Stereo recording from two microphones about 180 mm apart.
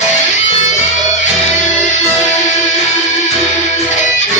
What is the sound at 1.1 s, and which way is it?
Music, 40° left (ahead or behind).